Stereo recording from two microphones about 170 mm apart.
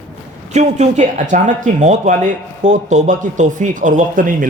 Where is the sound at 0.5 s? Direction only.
40° right (ahead or behind).